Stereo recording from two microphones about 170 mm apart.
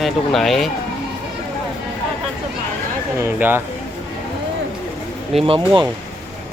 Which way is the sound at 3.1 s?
15° right (ahead or behind).